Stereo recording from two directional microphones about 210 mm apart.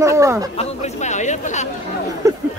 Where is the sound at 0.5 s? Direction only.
35° left (ahead or behind).